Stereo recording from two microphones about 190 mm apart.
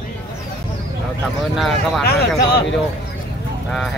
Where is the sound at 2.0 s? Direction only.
55° left (ahead or behind).